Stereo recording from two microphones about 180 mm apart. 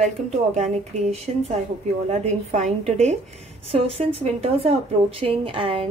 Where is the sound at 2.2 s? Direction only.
40° right (ahead or behind).